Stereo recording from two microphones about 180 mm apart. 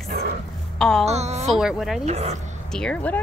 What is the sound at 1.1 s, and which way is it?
Speech, 40° right (ahead or behind).